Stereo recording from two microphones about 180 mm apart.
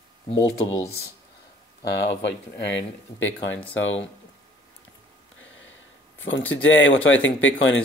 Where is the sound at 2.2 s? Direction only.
80° left.